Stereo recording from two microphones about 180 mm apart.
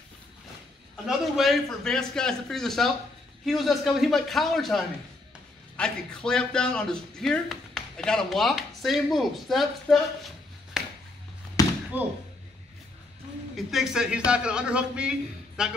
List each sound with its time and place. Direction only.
1.0 s speech: centre (ahead or behind)
10.8 s a sound: 5° right (ahead or behind)
11.6 s slam: 20° left (ahead or behind)
11.9 s speech: 10° right (ahead or behind)
13.6 s speech: centre (ahead or behind)